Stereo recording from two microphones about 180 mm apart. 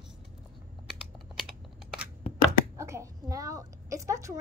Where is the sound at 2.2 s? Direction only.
35° left (ahead or behind).